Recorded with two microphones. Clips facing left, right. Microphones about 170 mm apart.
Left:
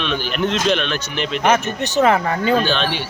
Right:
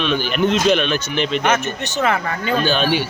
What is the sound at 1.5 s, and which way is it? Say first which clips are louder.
Speech: left 2 dB; 35° left (ahead or behind).